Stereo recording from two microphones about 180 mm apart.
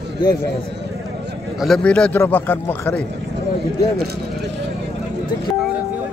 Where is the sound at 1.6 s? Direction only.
5° left (ahead or behind).